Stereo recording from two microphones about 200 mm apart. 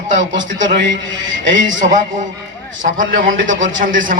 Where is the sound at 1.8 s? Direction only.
40° right (ahead or behind).